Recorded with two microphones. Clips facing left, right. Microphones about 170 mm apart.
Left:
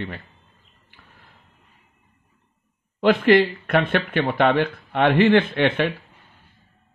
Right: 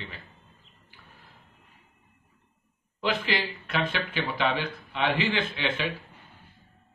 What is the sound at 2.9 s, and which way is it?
Speech, 60° left (ahead or behind).